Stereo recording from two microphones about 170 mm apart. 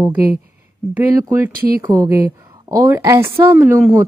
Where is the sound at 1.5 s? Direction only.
60° right (ahead or behind).